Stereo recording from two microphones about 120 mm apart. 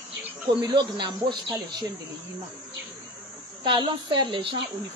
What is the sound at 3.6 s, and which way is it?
Speech, 45° right (ahead or behind).